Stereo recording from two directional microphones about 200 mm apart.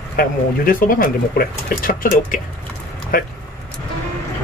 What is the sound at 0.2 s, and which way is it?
Speech, 45° left (ahead or behind).